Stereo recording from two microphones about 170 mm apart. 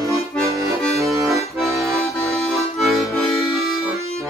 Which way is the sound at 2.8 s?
Centre (ahead or behind).